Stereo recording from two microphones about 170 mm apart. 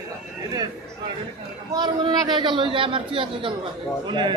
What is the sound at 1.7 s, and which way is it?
A man's voice, 25° right (ahead or behind).